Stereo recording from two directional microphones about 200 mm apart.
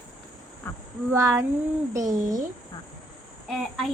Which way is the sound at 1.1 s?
15° right (ahead or behind).